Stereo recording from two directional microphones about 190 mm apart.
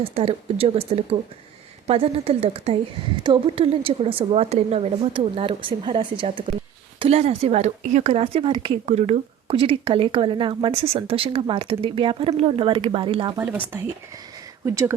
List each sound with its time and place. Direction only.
0.1 s speech: 30° right (ahead or behind)
14.6 s speech: 15° right (ahead or behind)